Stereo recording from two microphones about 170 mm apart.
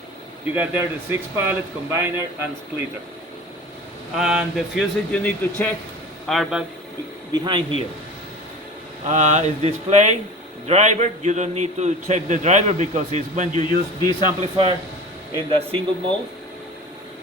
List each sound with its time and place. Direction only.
0.5 s speech: 10° right (ahead or behind)
4.1 s speech: 5° right (ahead or behind)
7.4 s speech: 25° right (ahead or behind)
9.0 s a man's voice: 40° right (ahead or behind)
13.6 s a man's voice: 25° left (ahead or behind)
14.5 s speech: 30° right (ahead or behind)